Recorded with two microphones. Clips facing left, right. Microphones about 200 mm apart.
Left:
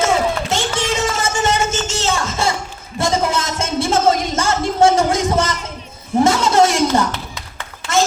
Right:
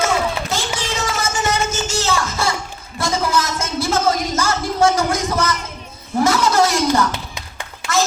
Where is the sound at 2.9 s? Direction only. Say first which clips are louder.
Left 2 dB; 25° left (ahead or behind).